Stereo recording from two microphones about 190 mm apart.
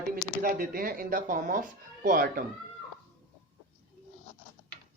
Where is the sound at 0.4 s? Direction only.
50° right (ahead or behind).